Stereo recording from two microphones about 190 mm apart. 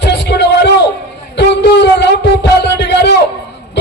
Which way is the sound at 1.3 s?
65° left (ahead or behind).